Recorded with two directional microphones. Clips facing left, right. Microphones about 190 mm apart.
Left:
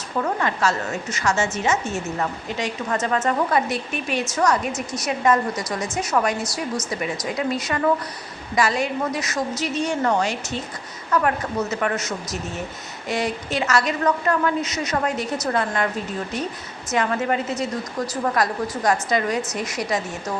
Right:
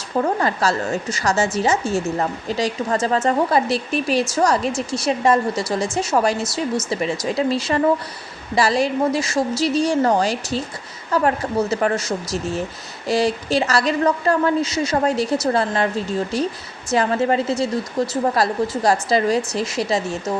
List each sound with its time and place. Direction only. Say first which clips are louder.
0.2 s a woman's voice: right 3 dB; 35° right (ahead or behind)